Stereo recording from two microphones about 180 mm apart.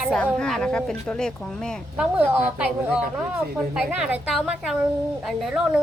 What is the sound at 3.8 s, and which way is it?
A woman's voice, 5° right (ahead or behind).